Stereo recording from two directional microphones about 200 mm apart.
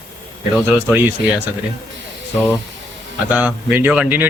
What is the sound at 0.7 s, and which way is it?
Speech, 5° right (ahead or behind).